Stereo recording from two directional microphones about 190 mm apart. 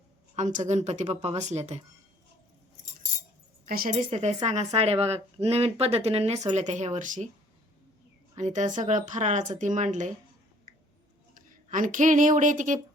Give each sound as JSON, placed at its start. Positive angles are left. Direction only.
{"t": 0.3, "sound": "speech", "side_deg": -40}
{"t": 3.7, "sound": "speech", "side_deg": -45}
{"t": 8.4, "sound": "speech", "side_deg": -40}
{"t": 11.3, "sound": "speech", "side_deg": -45}